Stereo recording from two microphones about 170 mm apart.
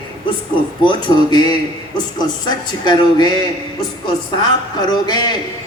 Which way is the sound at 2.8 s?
25° left (ahead or behind).